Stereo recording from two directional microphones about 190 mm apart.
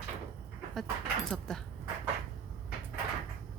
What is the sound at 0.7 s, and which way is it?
Dog, centre (ahead or behind).